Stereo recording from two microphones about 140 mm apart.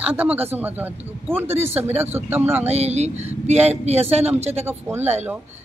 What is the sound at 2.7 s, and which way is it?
Speech, 50° right (ahead or behind).